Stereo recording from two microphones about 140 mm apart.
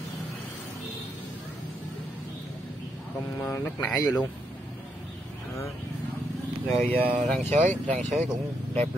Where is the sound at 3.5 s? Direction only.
20° left (ahead or behind).